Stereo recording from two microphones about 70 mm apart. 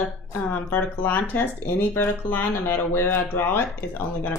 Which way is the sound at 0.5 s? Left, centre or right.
Left.